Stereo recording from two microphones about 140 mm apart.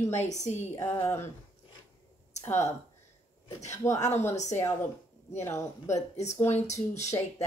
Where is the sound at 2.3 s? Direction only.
55° left (ahead or behind).